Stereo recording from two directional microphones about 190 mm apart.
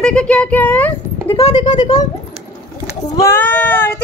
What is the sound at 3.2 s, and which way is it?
Speech, 10° left (ahead or behind).